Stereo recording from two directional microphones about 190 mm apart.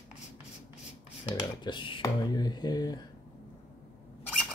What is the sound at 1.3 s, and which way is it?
Speech, 20° left (ahead or behind).